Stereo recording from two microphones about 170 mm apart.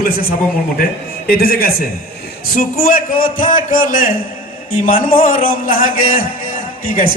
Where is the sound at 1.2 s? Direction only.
60° left (ahead or behind).